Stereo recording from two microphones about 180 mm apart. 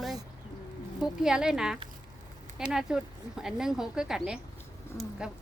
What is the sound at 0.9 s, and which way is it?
A woman's voice, 5° right (ahead or behind).